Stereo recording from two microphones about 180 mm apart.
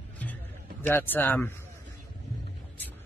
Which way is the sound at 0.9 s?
10° left (ahead or behind).